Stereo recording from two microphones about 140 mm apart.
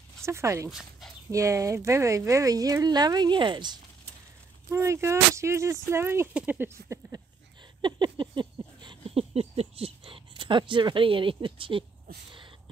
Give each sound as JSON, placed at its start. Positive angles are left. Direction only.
{"t": 0.2, "sound": "speech", "side_deg": -20}
{"t": 0.7, "sound": "speech", "side_deg": -5}
{"t": 1.3, "sound": "speech", "side_deg": -20}
{"t": 4.6, "sound": "speech", "side_deg": -20}
{"t": 7.8, "sound": "a sound", "side_deg": -35}